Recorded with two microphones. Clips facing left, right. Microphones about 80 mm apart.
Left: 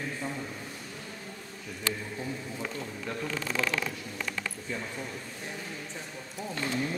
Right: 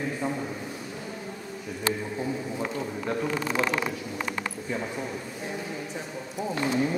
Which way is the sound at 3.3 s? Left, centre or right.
Centre.